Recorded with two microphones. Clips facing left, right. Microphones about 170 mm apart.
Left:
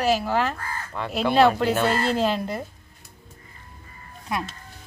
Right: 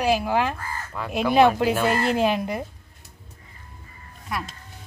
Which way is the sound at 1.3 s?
15° right (ahead or behind).